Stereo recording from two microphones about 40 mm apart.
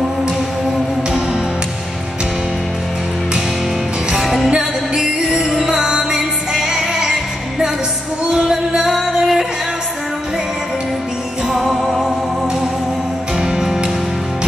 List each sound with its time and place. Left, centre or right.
4.1 s music: centre
4.5 s music: centre
11.7 s music: centre
13.4 s music: centre